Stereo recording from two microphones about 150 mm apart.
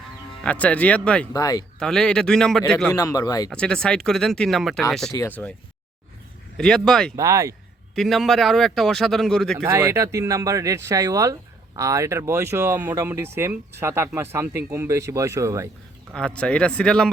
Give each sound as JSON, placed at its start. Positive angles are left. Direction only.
{"t": 0.4, "sound": "speech", "side_deg": 10}
{"t": 1.3, "sound": "speech", "side_deg": 25}
{"t": 1.8, "sound": "speech", "side_deg": 5}
{"t": 2.9, "sound": "speech", "side_deg": 20}
{"t": 3.5, "sound": "speech", "side_deg": 5}
{"t": 5.1, "sound": "speech", "side_deg": 15}
{"t": 6.6, "sound": "speech", "side_deg": 5}
{"t": 7.2, "sound": "speech", "side_deg": -20}
{"t": 7.9, "sound": "speech", "side_deg": 0}
{"t": 9.6, "sound": "speech", "side_deg": -20}
{"t": 16.1, "sound": "speech", "side_deg": 5}